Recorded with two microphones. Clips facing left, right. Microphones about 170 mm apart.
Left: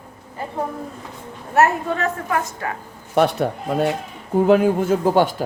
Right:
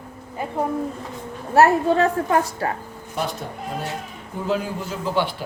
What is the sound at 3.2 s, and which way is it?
A man's voice, 65° left (ahead or behind).